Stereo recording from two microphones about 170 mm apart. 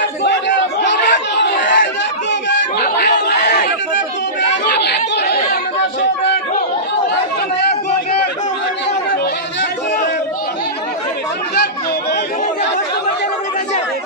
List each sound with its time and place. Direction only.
0.2 s chatter: 90° left
2.5 s chatter: 70° left (ahead or behind); by 4.0 s 85° left
4.6 s chatter: 75° left (ahead or behind)
11.5 s chatter: 70° left (ahead or behind)